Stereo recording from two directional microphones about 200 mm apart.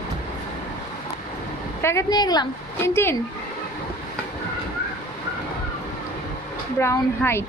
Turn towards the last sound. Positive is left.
turn(degrees=15)  # may be behind; listen again after turning